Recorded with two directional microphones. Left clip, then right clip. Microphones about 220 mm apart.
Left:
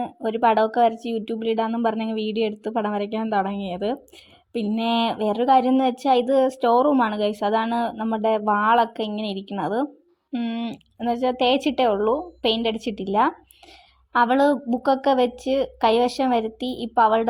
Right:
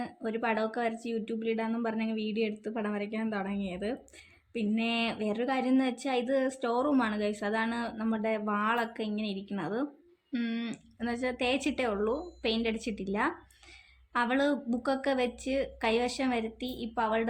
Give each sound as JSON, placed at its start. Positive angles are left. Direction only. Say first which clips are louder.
{"t": 0.0, "sound": "a woman's voice", "louder": "left 12 dB", "side_deg": 30}